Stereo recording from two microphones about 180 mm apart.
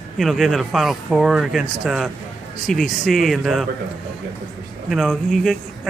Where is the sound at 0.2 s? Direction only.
Centre (ahead or behind).